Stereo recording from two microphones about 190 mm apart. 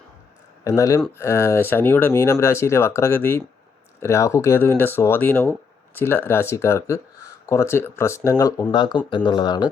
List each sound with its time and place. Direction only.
0.6 s speech: 15° left (ahead or behind)